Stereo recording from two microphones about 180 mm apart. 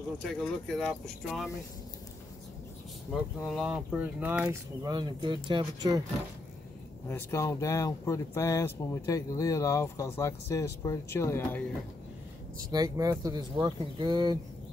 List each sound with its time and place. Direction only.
0.2 s speech: 5° left (ahead or behind)
3.4 s speech: centre (ahead or behind); by 6.0 s 25° right (ahead or behind)
7.1 s speech: 15° left (ahead or behind)
12.7 s speech: 20° right (ahead or behind)